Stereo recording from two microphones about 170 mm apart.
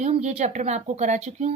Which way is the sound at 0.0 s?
40° right (ahead or behind).